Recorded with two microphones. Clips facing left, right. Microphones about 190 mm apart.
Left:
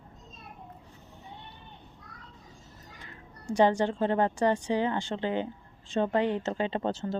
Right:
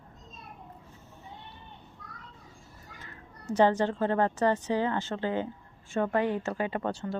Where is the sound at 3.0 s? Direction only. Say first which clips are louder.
Even; 15° left (ahead or behind).